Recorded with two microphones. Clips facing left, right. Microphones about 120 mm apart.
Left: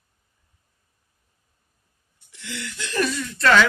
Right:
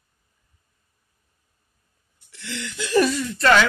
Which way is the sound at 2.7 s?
10° right (ahead or behind).